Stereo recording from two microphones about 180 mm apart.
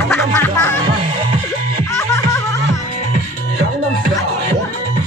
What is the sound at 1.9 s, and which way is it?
Music, 15° left (ahead or behind).